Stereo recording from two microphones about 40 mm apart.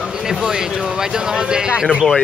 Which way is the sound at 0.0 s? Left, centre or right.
Centre.